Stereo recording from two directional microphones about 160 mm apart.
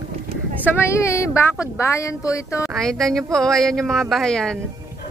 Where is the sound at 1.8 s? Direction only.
20° left (ahead or behind).